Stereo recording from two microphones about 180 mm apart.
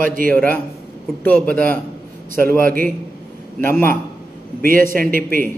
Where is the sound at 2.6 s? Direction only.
50° right (ahead or behind).